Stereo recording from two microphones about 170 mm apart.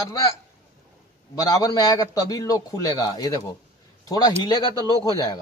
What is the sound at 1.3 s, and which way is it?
A man's voice, 20° left (ahead or behind).